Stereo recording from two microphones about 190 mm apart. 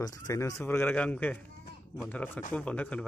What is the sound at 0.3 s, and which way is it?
A man's voice, 15° left (ahead or behind).